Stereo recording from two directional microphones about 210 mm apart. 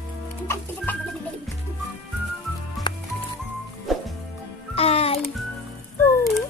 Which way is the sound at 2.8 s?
Centre (ahead or behind).